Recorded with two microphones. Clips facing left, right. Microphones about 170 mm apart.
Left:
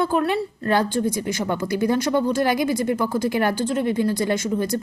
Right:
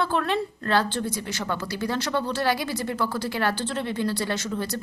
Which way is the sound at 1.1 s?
50° left (ahead or behind).